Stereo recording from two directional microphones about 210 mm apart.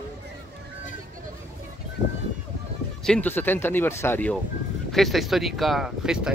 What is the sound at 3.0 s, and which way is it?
Speech, 5° left (ahead or behind).